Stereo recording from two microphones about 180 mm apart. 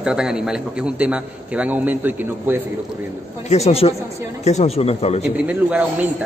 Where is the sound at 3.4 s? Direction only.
35° left (ahead or behind).